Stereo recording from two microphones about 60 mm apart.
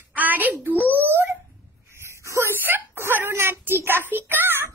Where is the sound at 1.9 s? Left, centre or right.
Right.